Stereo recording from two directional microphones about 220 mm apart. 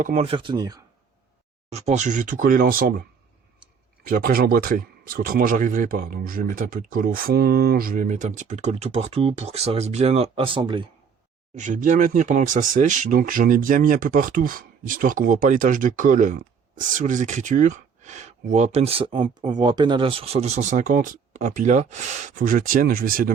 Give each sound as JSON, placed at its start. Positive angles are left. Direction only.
{"t": 0.0, "sound": "speech", "side_deg": -30}
{"t": 1.7, "sound": "speech", "side_deg": -30}
{"t": 4.0, "sound": "speech", "side_deg": -40}
{"t": 11.5, "sound": "speech", "side_deg": -35}